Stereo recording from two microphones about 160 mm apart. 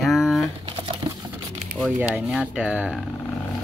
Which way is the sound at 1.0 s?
25° right (ahead or behind).